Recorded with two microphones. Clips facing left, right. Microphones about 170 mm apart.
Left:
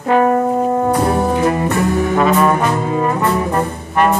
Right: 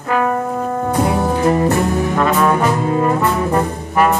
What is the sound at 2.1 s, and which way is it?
Trombone, 5° left (ahead or behind).